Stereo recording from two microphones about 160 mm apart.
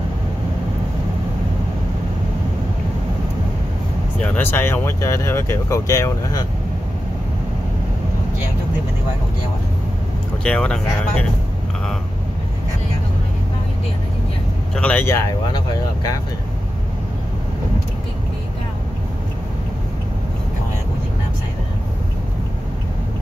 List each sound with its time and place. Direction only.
4.2 s speech: 15° left (ahead or behind)
10.4 s speech: 5° left (ahead or behind)
14.8 s speech: 10° left (ahead or behind)